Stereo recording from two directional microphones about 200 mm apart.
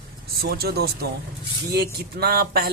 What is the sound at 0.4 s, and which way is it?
Speech, 50° right (ahead or behind).